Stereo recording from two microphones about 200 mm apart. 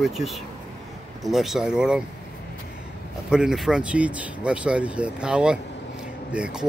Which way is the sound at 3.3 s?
5° right (ahead or behind).